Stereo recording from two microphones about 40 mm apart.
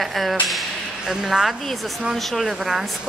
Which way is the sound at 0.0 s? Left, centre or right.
Centre.